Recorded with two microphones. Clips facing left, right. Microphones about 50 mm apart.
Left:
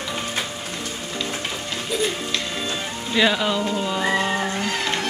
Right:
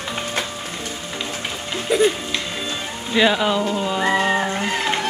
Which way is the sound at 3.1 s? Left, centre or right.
Centre.